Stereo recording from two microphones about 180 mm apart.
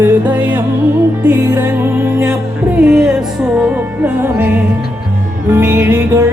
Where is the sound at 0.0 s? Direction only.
10° right (ahead or behind).